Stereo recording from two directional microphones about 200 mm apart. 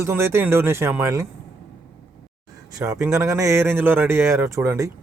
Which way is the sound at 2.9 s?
15° right (ahead or behind).